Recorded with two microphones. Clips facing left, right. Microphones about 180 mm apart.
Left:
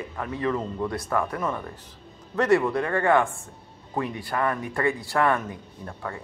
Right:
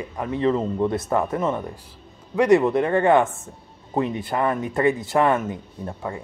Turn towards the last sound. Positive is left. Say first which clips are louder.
# right 5 dB
turn(degrees=-20)  # may be behind; listen again after turning